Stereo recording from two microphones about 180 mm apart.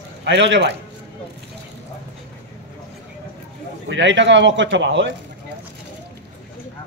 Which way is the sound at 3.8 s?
90° right.